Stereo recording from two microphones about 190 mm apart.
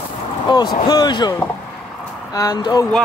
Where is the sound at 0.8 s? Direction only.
20° left (ahead or behind).